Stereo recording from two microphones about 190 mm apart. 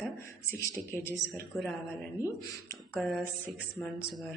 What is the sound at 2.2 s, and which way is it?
Speech, 15° left (ahead or behind).